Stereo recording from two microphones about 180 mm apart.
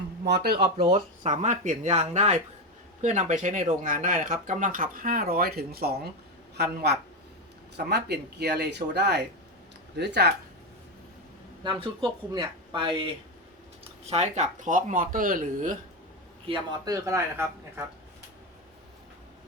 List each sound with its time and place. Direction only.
0.3 s speech: 65° right (ahead or behind)
0.9 s speech: 40° right (ahead or behind); by 10.3 s 65° right (ahead or behind)
11.6 s speech: 30° right (ahead or behind); by 15.8 s 50° right (ahead or behind)
16.5 s speech: 25° right (ahead or behind)